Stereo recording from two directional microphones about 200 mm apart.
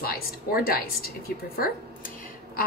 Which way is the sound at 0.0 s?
50° left (ahead or behind).